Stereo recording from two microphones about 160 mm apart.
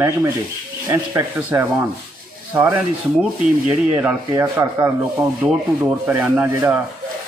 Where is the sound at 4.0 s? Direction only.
15° right (ahead or behind).